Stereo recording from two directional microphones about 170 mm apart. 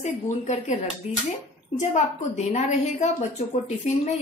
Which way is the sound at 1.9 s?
40° left (ahead or behind).